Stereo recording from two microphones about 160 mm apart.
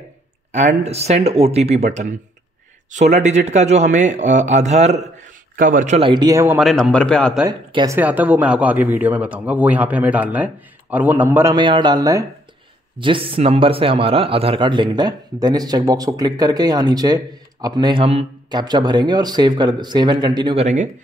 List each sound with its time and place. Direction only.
0.5 s speech: 45° right (ahead or behind)
2.9 s speech: 45° right (ahead or behind)
5.9 s a man's voice: 30° right (ahead or behind)
6.6 s a man's voice: 5° left (ahead or behind)
7.4 s a man's voice: 20° right (ahead or behind)
8.0 s speech: 10° right (ahead or behind)
11.6 s a man's voice: 30° right (ahead or behind)
13.0 s a man's voice: 35° right (ahead or behind)
20.6 s speech: 50° right (ahead or behind)